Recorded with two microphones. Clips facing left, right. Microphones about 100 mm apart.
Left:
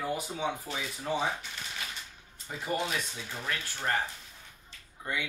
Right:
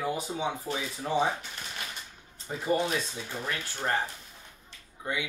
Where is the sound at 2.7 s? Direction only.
25° right (ahead or behind).